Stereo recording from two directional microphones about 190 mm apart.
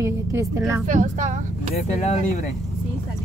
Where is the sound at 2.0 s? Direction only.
40° left (ahead or behind).